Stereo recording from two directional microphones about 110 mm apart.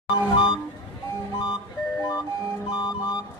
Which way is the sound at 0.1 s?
45° left (ahead or behind).